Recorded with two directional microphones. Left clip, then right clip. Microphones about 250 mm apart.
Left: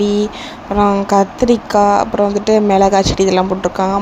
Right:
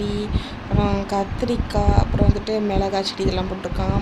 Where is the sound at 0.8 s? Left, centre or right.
Centre.